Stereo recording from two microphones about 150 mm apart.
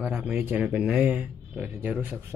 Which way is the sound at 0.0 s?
10° right (ahead or behind).